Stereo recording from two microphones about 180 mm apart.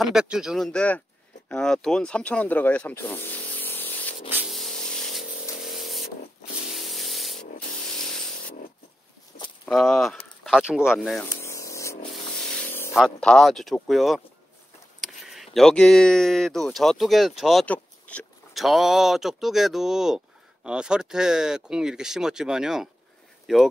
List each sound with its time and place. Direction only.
0.0 s speech: 5° right (ahead or behind)
4.3 s spray: 5° right (ahead or behind)
8.0 s a sound: centre (ahead or behind)
9.7 s speech: centre (ahead or behind)
11.3 s vehicle: 15° left (ahead or behind)
12.1 s a sound: 5° left (ahead or behind)
12.9 s speech: 5° left (ahead or behind)